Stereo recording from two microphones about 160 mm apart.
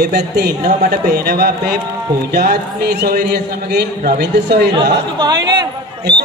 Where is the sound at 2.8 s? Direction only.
85° right.